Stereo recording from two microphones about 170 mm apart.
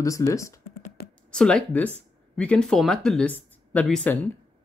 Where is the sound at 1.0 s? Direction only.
65° left (ahead or behind).